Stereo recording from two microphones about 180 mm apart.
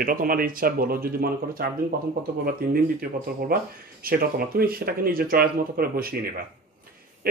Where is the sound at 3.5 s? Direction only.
55° right (ahead or behind).